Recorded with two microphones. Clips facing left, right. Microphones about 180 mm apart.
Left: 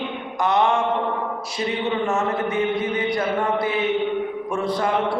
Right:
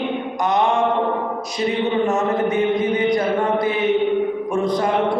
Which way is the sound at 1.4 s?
20° right (ahead or behind).